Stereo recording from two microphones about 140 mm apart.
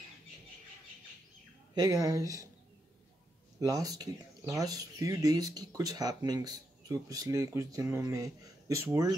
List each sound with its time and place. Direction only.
1.8 s speech: 25° right (ahead or behind)
3.5 s speech: 25° right (ahead or behind)